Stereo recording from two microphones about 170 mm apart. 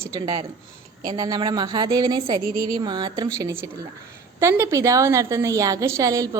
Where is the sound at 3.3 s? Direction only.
15° right (ahead or behind).